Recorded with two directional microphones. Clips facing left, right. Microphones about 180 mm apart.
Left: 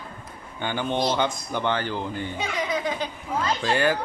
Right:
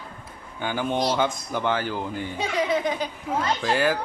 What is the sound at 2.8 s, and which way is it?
Speech, 20° right (ahead or behind).